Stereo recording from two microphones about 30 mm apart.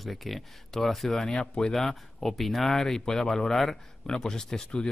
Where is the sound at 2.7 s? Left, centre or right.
Centre.